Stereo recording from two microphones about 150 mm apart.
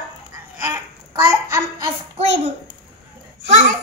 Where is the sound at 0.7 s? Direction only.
20° right (ahead or behind).